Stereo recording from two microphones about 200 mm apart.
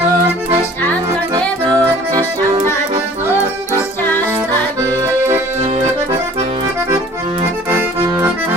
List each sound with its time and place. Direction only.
1.3 s accordion: 20° right (ahead or behind)
5.7 s accordion: 25° right (ahead or behind)
7.7 s accordion: 10° right (ahead or behind)